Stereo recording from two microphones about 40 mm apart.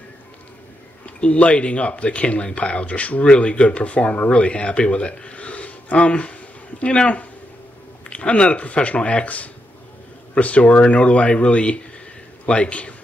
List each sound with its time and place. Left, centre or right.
1.0 s a man's voice: left